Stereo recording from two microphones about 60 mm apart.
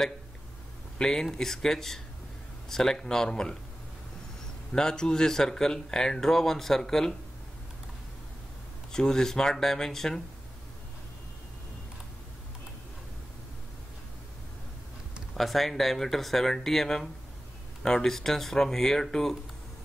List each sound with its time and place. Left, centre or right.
0.9 s speech: centre
4.7 s speech: centre
8.9 s speech: centre
15.3 s speech: centre